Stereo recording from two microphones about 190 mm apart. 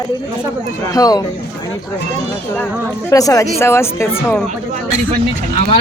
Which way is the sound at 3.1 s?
15° left (ahead or behind).